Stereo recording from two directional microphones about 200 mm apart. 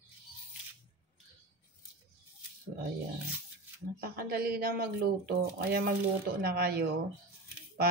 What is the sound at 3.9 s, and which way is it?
Speech, 50° right (ahead or behind).